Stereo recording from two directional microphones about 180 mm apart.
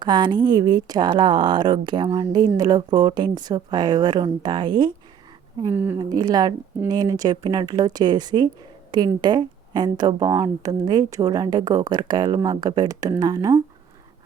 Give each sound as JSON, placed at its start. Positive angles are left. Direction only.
{"t": 0.0, "sound": "speech", "side_deg": -25}
{"t": 5.6, "sound": "speech", "side_deg": -10}
{"t": 6.0, "sound": "speech", "side_deg": -20}